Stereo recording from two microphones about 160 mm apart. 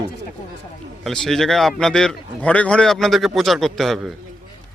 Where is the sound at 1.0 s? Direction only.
5° left (ahead or behind).